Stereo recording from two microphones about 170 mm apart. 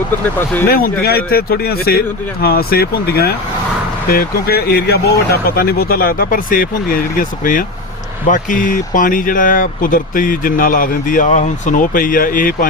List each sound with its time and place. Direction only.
0.7 s speech: 65° left (ahead or behind)